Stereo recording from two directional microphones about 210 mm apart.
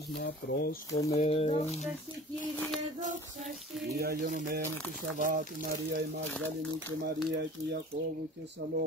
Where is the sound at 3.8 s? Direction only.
50° right (ahead or behind).